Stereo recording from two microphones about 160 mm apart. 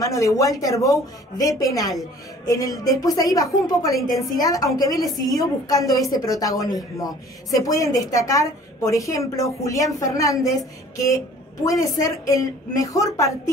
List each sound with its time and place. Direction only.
0.0 s speech: 20° left (ahead or behind)
2.4 s music: 20° left (ahead or behind)
2.8 s speech: 20° left (ahead or behind)